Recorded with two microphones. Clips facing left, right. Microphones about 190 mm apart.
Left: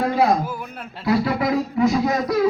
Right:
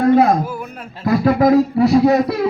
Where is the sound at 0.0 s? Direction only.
55° right (ahead or behind).